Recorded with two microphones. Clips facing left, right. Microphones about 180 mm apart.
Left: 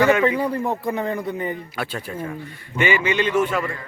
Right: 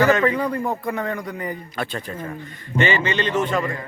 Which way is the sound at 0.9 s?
30° left (ahead or behind).